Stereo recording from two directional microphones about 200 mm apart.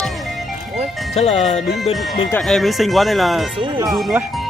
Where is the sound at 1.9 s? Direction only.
Centre (ahead or behind).